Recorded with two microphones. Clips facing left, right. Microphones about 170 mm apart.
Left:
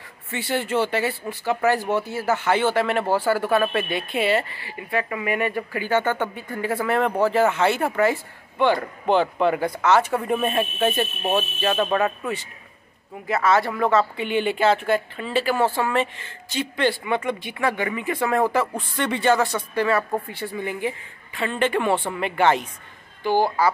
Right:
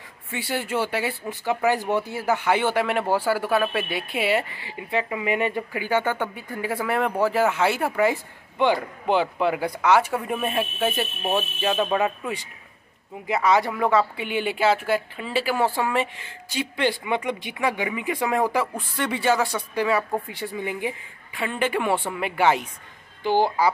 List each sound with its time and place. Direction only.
0.3 s speech: 10° right (ahead or behind)